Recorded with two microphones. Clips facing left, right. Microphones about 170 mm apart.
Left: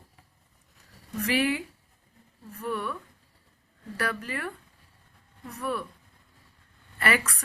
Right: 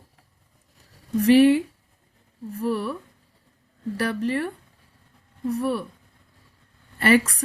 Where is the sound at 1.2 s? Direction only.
30° right (ahead or behind).